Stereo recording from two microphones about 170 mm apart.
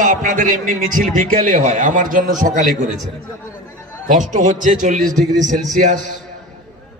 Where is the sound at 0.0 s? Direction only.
50° right (ahead or behind).